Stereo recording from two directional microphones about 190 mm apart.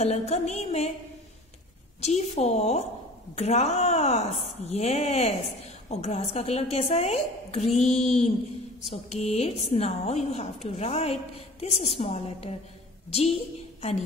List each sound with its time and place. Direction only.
0.0 s a woman's voice: 35° left (ahead or behind)
2.0 s a woman's voice: 35° left (ahead or behind)